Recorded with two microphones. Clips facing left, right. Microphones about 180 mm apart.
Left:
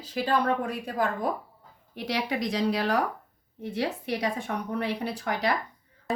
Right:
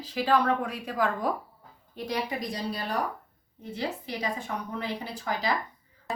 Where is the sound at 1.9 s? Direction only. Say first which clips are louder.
Left 2 dB; 80° left.